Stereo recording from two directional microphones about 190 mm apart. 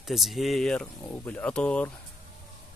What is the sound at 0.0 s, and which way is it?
Speech, centre (ahead or behind).